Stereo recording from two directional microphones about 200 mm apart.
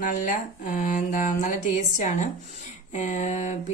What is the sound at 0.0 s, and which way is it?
Speech, 40° left (ahead or behind).